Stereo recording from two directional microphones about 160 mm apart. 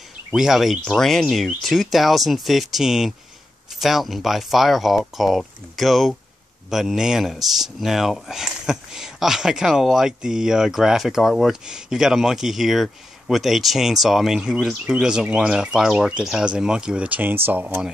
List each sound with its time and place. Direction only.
0.3 s speech: centre (ahead or behind)